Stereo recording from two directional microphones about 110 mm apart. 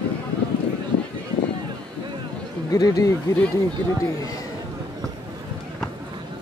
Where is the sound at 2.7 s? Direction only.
30° left (ahead or behind).